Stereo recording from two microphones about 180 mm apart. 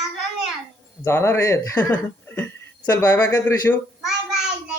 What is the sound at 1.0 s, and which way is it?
Speech, 15° left (ahead or behind).